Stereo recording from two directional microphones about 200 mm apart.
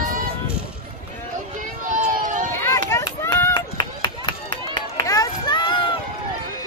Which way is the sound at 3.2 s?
15° left (ahead or behind).